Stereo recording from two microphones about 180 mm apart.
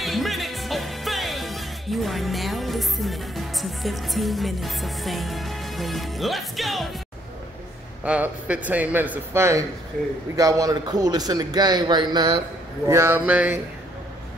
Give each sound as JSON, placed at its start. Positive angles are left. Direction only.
{"t": 0.0, "sound": "music", "side_deg": 0}
{"t": 8.0, "sound": "a man's voice", "side_deg": -5}